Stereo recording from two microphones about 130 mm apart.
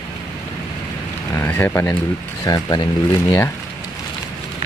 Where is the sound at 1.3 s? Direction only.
20° left (ahead or behind).